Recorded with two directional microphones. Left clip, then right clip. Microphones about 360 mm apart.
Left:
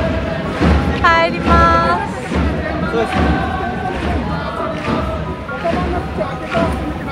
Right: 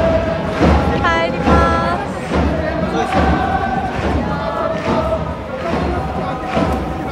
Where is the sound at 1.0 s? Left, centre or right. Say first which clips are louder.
Left 6 dB; centre.